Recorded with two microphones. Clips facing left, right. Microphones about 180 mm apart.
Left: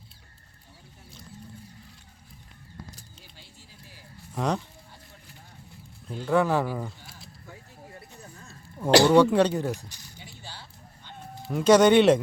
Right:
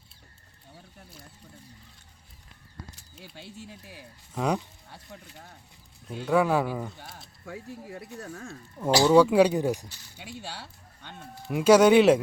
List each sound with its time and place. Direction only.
3.3 s speech: 65° right (ahead or behind)
4.4 s speech: 10° right (ahead or behind)
6.1 s speech: 5° right (ahead or behind)
7.4 s speech: 80° right
8.9 s speech: 65° left (ahead or behind)
9.1 s speech: 5° right (ahead or behind)
10.2 s a sound: 70° right (ahead or behind)
11.4 s speech: 10° right (ahead or behind)